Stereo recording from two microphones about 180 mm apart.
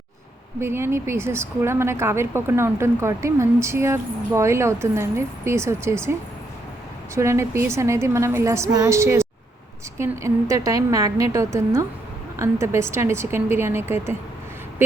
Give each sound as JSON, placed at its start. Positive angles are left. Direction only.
{"t": 0.6, "sound": "speech", "side_deg": -15}
{"t": 7.2, "sound": "speech", "side_deg": -15}